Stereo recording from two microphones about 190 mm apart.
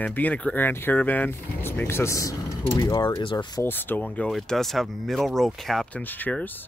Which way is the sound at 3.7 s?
10° left (ahead or behind).